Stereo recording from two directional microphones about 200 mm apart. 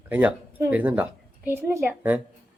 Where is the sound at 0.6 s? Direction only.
10° right (ahead or behind).